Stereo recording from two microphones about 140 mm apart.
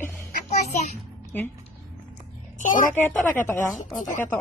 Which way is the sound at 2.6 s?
70° left (ahead or behind).